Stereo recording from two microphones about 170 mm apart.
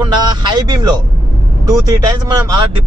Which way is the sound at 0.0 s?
25° right (ahead or behind).